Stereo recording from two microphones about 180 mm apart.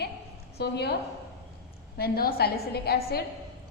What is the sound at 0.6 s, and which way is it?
Speech, 65° left (ahead or behind).